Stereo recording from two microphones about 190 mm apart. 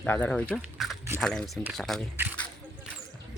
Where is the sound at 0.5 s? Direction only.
Centre (ahead or behind).